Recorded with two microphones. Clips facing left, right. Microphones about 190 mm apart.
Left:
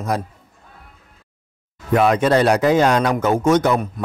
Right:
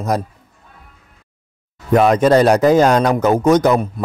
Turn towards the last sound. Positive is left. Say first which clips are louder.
# right 3 dB
turn(degrees=-40)  # may be behind; listen again after turning